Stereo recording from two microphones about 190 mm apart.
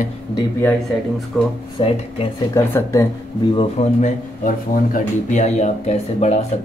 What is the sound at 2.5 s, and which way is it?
Speech, 15° left (ahead or behind).